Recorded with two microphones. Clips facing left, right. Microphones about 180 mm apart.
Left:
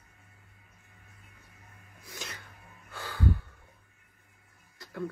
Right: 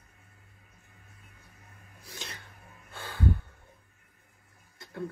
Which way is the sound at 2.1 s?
30° right (ahead or behind).